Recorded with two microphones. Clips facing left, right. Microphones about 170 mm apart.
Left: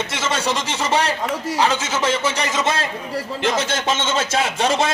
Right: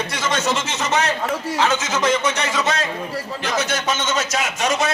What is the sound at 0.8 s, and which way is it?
A man's voice, 30° left (ahead or behind).